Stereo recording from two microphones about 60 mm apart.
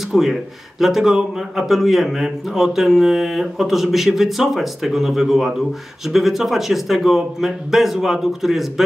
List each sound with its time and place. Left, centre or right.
0.1 s speech: centre